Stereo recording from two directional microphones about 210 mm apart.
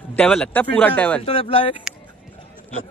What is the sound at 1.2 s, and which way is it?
Speech, 30° left (ahead or behind).